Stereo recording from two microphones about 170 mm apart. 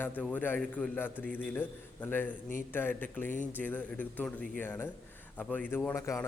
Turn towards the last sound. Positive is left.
turn(degrees=15)  # may be behind; listen again after turning